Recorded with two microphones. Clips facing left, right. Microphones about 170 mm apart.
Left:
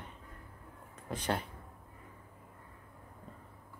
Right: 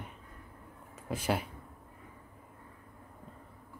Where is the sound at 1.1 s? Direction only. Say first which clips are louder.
Right 3 dB; 5° right (ahead or behind).